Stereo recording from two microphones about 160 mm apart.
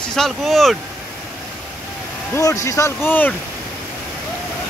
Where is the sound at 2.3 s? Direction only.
20° left (ahead or behind).